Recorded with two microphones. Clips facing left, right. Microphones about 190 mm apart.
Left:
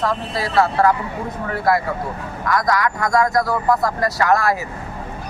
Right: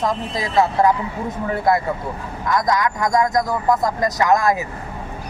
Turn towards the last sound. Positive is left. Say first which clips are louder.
# right 1 dB
turn(degrees=-20)  # may be behind; listen again after turning